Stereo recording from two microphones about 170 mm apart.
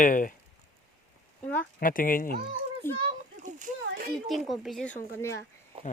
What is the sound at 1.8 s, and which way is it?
Speech, 55° left (ahead or behind).